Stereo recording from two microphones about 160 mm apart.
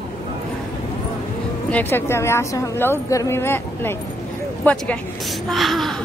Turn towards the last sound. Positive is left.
turn(degrees=0)  # may be behind; listen again after turning